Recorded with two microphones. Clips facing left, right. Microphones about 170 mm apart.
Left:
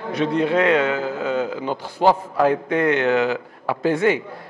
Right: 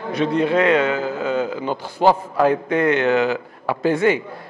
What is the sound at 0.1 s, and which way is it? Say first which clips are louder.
A man's voice: right 1 dB; 15° right (ahead or behind).